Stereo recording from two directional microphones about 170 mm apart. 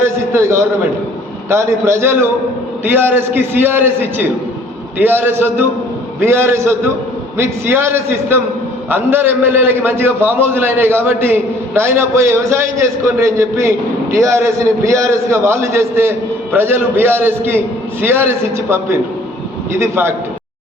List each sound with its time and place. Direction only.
0.0 s a man's voice: 15° right (ahead or behind)